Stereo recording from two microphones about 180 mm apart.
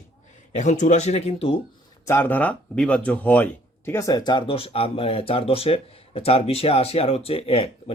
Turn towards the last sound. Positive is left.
turn(degrees=35)  # may be behind; listen again after turning